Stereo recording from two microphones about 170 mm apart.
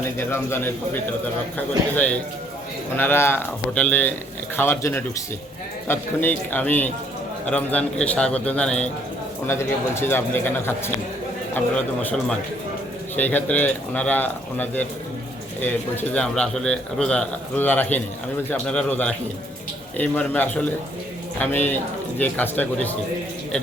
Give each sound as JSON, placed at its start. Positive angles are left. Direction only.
{"t": 0.2, "sound": "a man's voice", "side_deg": 15}
{"t": 13.1, "sound": "a man's voice", "side_deg": 10}